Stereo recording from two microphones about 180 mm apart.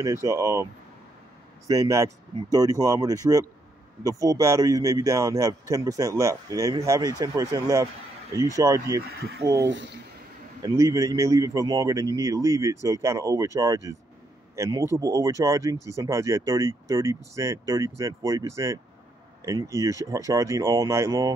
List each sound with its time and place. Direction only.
0.0 s speech: 15° right (ahead or behind)
1.7 s speech: 15° right (ahead or behind)
9.4 s speech: 90° right
10.6 s a man's voice: 20° right (ahead or behind)